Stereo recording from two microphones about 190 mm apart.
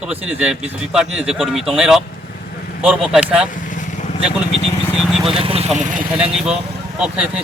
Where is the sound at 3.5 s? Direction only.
45° left (ahead or behind).